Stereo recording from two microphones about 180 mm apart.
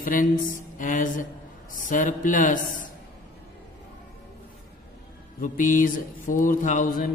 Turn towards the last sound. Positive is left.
turn(degrees=50)  # may be behind; listen again after turning